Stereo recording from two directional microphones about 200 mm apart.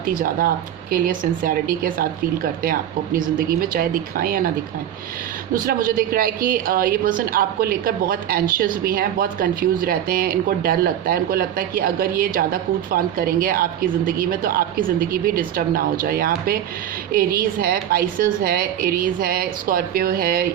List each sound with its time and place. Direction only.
0.0 s a woman's voice: 45° right (ahead or behind)
5.5 s a woman's voice: 45° right (ahead or behind)